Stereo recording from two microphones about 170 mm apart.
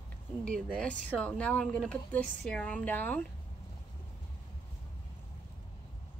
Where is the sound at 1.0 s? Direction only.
5° left (ahead or behind).